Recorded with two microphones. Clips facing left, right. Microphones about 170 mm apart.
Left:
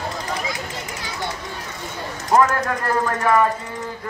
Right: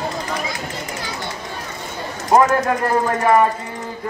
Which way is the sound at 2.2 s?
25° right (ahead or behind).